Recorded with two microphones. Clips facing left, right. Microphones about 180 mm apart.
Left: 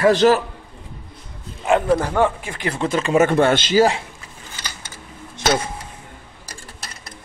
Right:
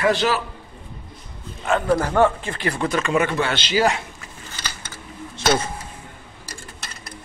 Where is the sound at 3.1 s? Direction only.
45° left (ahead or behind).